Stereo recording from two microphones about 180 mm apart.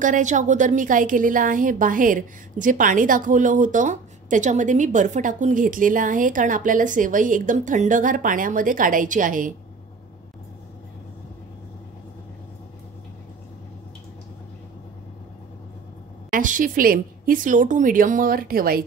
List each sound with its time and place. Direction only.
0.0 s a woman's voice: 45° right (ahead or behind)
16.3 s a woman's voice: 50° right (ahead or behind)